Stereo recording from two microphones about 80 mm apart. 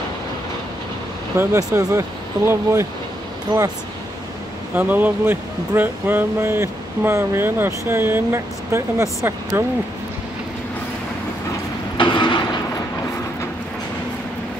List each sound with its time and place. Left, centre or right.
1.5 s speech: right
3.5 s speech: right
4.7 s speech: right
12.0 s vehicle: left